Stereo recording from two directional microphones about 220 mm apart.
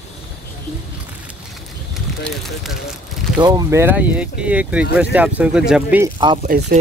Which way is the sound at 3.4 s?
15° right (ahead or behind).